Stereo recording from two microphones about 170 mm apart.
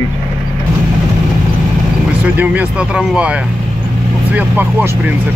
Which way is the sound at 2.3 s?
10° right (ahead or behind).